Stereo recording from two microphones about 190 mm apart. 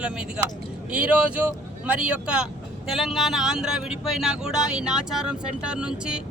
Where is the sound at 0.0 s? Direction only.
5° right (ahead or behind).